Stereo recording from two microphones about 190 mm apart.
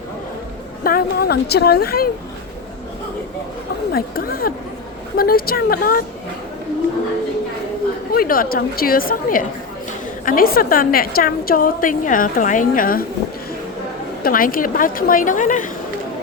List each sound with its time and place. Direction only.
0.9 s a woman's voice: 55° left (ahead or behind)
3.9 s a woman's voice: 50° left (ahead or behind)
8.1 s a woman's voice: 50° left (ahead or behind)
14.2 s a woman's voice: 50° left (ahead or behind)